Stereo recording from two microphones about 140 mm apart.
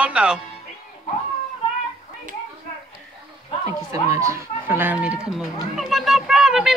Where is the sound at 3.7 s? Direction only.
25° right (ahead or behind); by 6.7 s 5° right (ahead or behind).